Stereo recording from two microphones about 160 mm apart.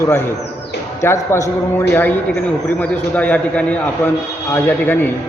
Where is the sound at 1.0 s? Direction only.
15° left (ahead or behind).